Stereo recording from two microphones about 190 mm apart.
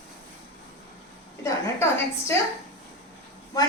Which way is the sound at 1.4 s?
15° left (ahead or behind).